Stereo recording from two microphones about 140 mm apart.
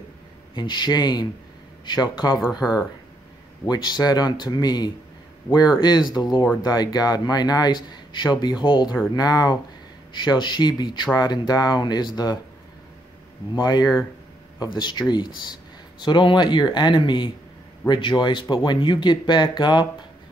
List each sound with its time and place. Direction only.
0.6 s speech: 30° left (ahead or behind)
2.6 s speech: 5° right (ahead or behind)
3.6 s speech: 30° left (ahead or behind)
13.6 s speech: 30° left (ahead or behind)